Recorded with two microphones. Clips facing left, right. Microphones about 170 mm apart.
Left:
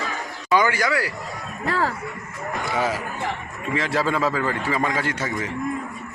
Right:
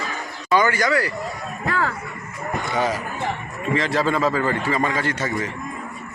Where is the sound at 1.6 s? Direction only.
30° left (ahead or behind).